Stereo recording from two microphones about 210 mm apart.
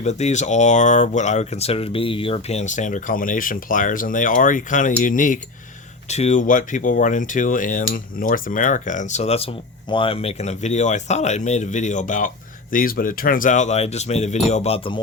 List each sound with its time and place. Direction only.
0.0 s speech: 30° left (ahead or behind)